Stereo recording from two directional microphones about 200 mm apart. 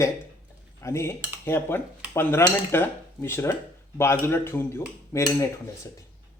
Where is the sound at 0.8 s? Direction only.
15° left (ahead or behind).